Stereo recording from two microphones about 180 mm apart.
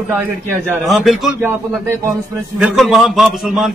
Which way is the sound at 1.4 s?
15° right (ahead or behind).